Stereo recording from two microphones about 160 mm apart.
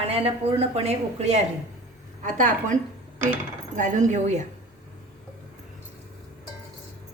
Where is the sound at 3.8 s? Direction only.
50° right (ahead or behind).